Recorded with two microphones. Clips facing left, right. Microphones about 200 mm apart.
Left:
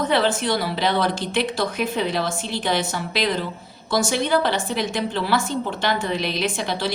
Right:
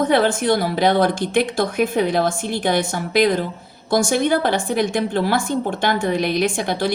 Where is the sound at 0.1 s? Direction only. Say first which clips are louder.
Right 4 dB; 50° right (ahead or behind).